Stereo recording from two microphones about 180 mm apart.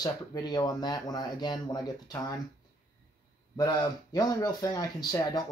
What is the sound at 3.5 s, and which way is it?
Speech, 20° left (ahead or behind).